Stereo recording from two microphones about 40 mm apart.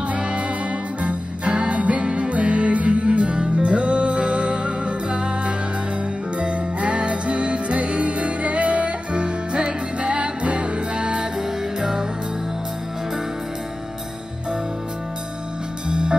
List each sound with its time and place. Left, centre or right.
1.0 s music: right
15.9 s music: right